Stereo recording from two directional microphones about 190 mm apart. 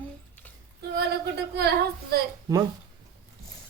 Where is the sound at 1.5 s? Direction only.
60° right (ahead or behind).